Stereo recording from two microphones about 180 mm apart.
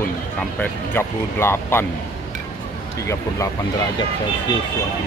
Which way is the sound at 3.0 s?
15° left (ahead or behind).